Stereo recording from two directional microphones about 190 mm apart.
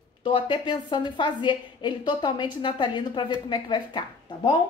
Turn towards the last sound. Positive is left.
turn(degrees=25)  # may be behind; listen again after turning